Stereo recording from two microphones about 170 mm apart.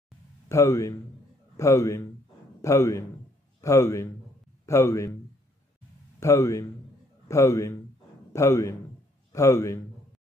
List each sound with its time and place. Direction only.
0.5 s a man's voice: 15° left (ahead or behind)
6.1 s a man's voice: 15° left (ahead or behind)